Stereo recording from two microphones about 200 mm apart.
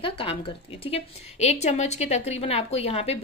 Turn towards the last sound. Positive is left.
turn(degrees=30)  # may be behind; listen again after turning